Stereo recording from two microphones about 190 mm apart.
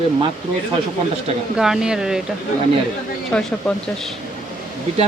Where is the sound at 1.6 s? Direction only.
5° right (ahead or behind).